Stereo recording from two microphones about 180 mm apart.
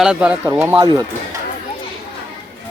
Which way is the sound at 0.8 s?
20° right (ahead or behind).